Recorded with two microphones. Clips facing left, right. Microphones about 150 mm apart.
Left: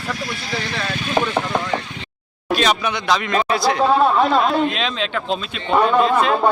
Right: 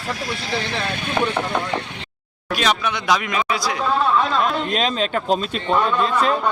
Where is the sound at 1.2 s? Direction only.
20° left (ahead or behind).